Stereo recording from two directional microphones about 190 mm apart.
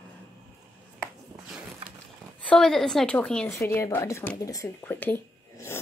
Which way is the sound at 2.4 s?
5° left (ahead or behind).